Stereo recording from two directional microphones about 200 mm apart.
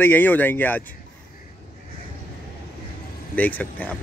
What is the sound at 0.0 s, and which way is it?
Speech, 10° left (ahead or behind).